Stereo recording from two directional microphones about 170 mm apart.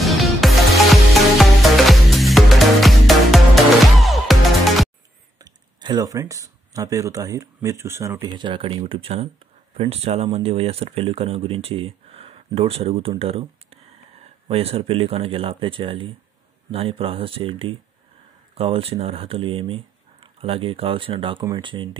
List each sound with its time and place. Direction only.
0.0 s music: centre (ahead or behind)
5.4 s speech: 25° right (ahead or behind)